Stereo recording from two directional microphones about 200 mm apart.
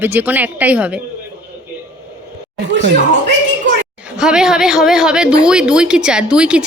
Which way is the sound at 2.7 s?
60° right (ahead or behind).